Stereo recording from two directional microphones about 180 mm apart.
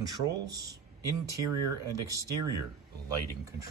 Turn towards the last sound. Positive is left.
turn(degrees=-20)  # may be behind; listen again after turning